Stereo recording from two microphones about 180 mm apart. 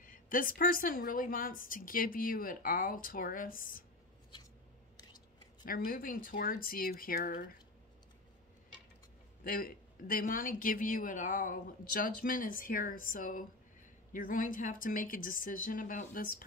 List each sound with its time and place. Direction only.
0.0 s speech: 50° left (ahead or behind)
4.9 s scissors: 20° left (ahead or behind)
5.7 s speech: 50° left (ahead or behind)
9.4 s speech: 55° left (ahead or behind)